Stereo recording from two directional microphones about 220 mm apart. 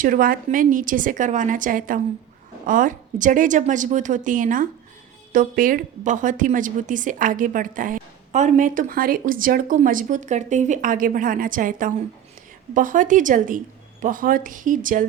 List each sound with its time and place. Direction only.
0.0 s a woman's voice: 40° right (ahead or behind)